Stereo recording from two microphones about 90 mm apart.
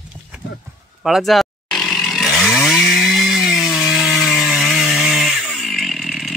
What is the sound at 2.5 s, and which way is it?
Chainsaw, 5° left (ahead or behind).